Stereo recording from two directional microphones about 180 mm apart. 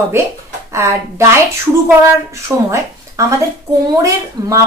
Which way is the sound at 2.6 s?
15° right (ahead or behind).